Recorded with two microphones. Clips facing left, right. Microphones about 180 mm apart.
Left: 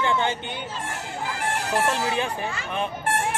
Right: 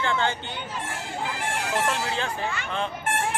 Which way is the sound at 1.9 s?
15° left (ahead or behind).